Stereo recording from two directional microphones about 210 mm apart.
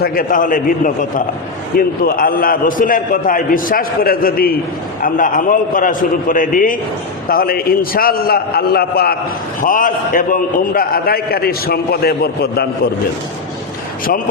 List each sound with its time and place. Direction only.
0.0 s a man's voice: 45° left (ahead or behind)